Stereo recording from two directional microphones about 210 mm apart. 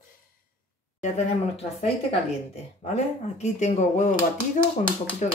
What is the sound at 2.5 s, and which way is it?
Speech, 30° left (ahead or behind).